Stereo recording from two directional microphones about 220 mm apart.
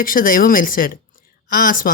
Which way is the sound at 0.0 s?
40° left (ahead or behind).